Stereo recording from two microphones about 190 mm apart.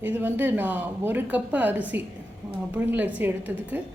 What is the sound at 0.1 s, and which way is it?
A woman's voice, 10° right (ahead or behind).